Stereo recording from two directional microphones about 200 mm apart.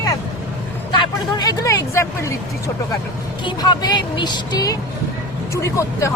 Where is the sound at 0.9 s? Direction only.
20° left (ahead or behind).